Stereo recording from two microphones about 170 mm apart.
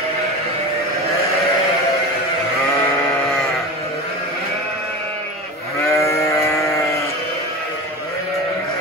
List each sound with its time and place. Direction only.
5.9 s sheep: 20° left (ahead or behind)